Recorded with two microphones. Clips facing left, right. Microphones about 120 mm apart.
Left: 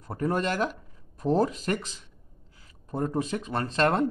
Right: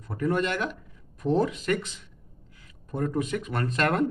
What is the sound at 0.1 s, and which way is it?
Speech, 35° left (ahead or behind).